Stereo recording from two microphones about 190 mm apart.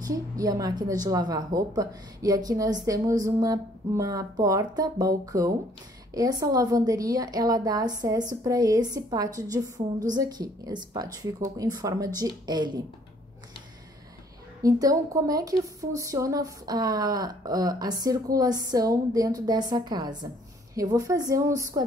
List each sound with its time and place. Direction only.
0.1 s a woman's voice: 20° right (ahead or behind)
14.6 s a woman's voice: 20° right (ahead or behind)